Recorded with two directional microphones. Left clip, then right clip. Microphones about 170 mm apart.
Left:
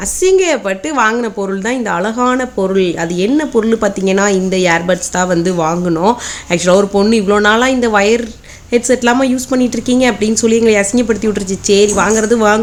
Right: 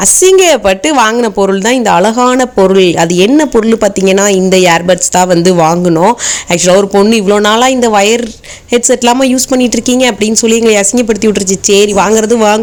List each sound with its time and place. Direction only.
0.2 s speech: 30° right (ahead or behind)